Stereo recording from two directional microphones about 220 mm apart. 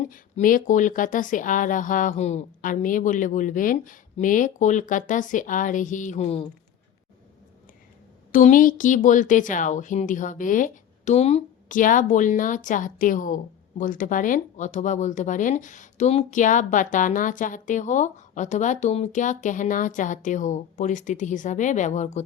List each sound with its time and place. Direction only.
0.0 s speech: 35° left (ahead or behind)
8.3 s speech: 35° left (ahead or behind)